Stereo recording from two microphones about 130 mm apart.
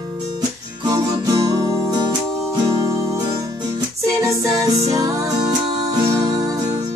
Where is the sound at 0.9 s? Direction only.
30° right (ahead or behind).